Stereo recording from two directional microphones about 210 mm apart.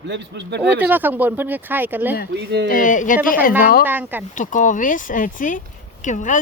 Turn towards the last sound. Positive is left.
turn(degrees=35)  # may be behind; listen again after turning